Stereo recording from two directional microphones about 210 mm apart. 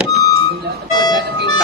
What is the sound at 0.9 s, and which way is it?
Speech, 20° left (ahead or behind).